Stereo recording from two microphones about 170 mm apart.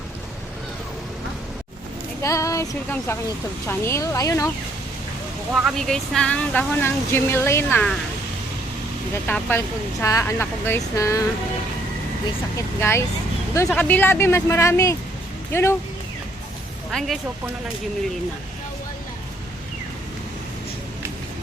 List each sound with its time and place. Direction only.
2.2 s speech: 20° left (ahead or behind)
5.5 s speech: centre (ahead or behind)
9.2 s speech: 10° left (ahead or behind)
12.5 s speech: 15° left (ahead or behind)
16.9 s speech: centre (ahead or behind)